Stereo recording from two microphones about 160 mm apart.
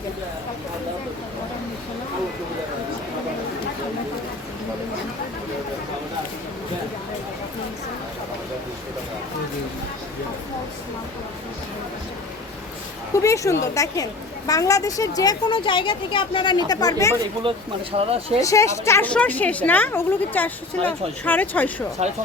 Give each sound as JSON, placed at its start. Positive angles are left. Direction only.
{"t": 13.2, "sound": "a woman's voice", "side_deg": 20}
{"t": 16.6, "sound": "a woman's voice", "side_deg": 20}
{"t": 17.9, "sound": "speech", "side_deg": -40}
{"t": 18.4, "sound": "a woman's voice", "side_deg": 20}